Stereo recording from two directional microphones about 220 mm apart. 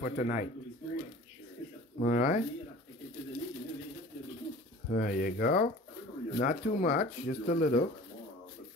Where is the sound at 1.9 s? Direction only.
35° left (ahead or behind).